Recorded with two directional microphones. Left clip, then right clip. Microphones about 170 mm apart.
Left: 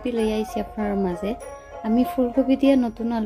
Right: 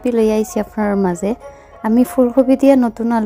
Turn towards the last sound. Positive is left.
turn(degrees=-35)  # may be behind; listen again after turning